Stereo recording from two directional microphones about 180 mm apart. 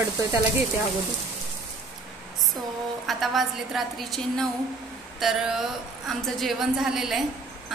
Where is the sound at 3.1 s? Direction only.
Centre (ahead or behind).